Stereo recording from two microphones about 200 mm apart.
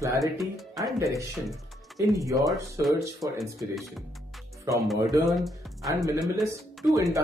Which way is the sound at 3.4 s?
Centre (ahead or behind).